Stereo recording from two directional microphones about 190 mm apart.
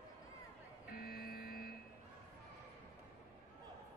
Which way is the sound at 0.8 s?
50° left (ahead or behind).